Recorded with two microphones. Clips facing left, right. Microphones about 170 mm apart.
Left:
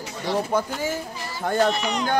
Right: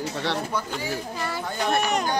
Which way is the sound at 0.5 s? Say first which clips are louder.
Left 6 dB; 50° left (ahead or behind).